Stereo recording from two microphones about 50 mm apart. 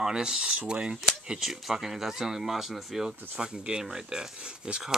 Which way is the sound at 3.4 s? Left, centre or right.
Centre.